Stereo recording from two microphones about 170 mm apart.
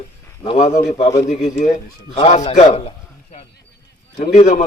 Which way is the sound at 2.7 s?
35° left (ahead or behind).